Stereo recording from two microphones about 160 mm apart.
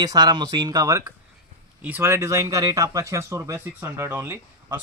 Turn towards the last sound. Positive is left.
turn(degrees=-15)  # may be behind; listen again after turning